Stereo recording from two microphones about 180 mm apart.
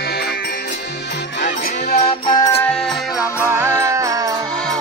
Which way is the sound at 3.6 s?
15° right (ahead or behind).